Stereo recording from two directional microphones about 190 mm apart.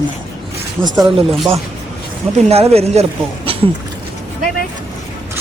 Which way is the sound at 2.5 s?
35° right (ahead or behind).